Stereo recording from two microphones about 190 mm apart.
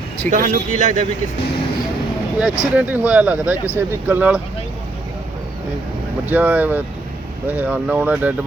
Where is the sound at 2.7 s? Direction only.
10° right (ahead or behind).